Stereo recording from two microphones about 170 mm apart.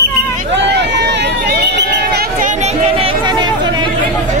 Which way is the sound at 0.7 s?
80° right.